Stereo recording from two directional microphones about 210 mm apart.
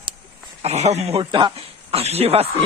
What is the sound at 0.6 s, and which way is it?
Speech, 30° right (ahead or behind).